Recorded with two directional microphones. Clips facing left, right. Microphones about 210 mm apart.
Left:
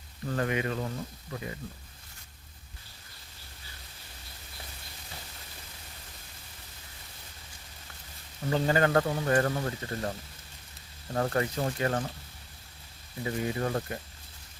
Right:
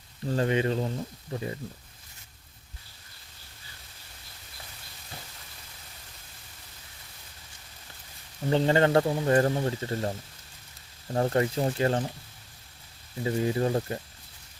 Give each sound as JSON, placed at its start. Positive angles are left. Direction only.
{"t": 0.3, "sound": "speech", "side_deg": -30}
{"t": 8.4, "sound": "speech", "side_deg": -30}
{"t": 11.1, "sound": "speech", "side_deg": -25}
{"t": 13.2, "sound": "speech", "side_deg": -25}